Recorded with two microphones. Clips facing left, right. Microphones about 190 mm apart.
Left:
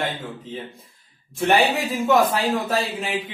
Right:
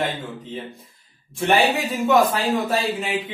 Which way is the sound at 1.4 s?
Centre (ahead or behind).